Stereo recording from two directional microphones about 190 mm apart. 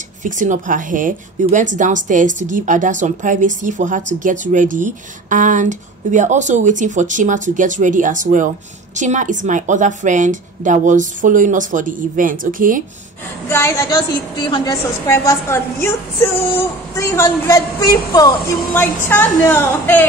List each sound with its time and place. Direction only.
0.2 s a woman's voice: 40° right (ahead or behind)
13.5 s a woman's voice: 15° left (ahead or behind)
16.9 s a woman's voice: 15° left (ahead or behind)